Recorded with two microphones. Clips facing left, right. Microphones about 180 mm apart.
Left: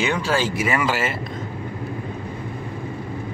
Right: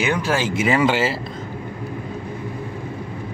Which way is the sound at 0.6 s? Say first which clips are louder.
Right 4 dB; 25° right (ahead or behind).